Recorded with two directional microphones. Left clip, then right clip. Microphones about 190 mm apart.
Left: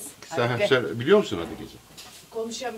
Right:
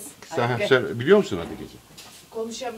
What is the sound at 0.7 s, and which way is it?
Speech, 45° right (ahead or behind).